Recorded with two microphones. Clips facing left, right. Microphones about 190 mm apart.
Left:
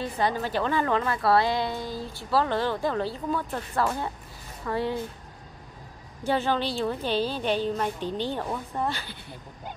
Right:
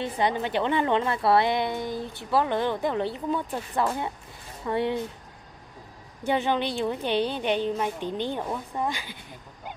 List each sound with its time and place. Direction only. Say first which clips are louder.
0.0 s a woman's voice: right 1 dB; 20° right (ahead or behind)
6.2 s a woman's voice: right 1 dB; 20° right (ahead or behind)